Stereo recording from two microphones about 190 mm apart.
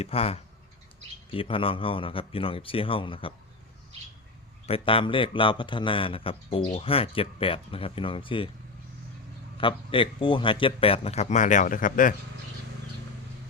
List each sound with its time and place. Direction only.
0.0 s a man's voice: 30° left (ahead or behind)
4.6 s a man's voice: 30° left (ahead or behind)
9.6 s a man's voice: 25° left (ahead or behind); by 12.1 s 45° left (ahead or behind)